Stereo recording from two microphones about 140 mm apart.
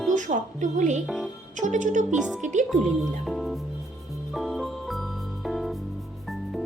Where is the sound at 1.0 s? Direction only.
Centre (ahead or behind).